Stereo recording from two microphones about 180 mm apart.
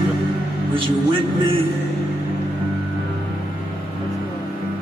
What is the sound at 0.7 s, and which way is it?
Speech, 30° right (ahead or behind).